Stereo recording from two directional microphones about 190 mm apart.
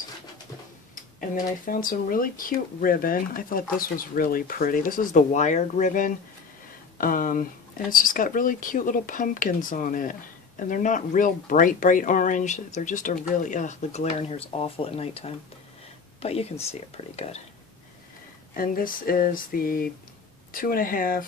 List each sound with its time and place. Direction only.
1.3 s speech: 45° left (ahead or behind)
18.5 s speech: 50° left (ahead or behind)